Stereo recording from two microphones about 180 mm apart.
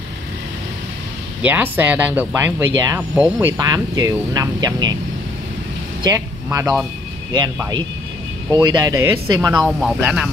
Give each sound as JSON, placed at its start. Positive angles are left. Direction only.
{"t": 1.4, "sound": "speech", "side_deg": -10}
{"t": 3.5, "sound": "speech", "side_deg": -20}
{"t": 6.0, "sound": "speech", "side_deg": -15}
{"t": 8.5, "sound": "speech", "side_deg": -20}
{"t": 9.5, "sound": "speech", "side_deg": 0}